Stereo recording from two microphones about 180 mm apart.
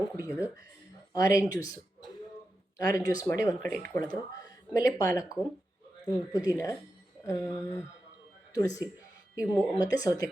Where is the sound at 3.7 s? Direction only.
15° left (ahead or behind).